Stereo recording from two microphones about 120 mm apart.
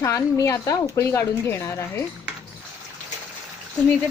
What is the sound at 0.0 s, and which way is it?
Speech, 25° left (ahead or behind).